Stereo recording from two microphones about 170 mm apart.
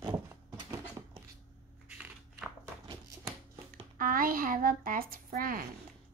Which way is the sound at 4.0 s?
55° right (ahead or behind).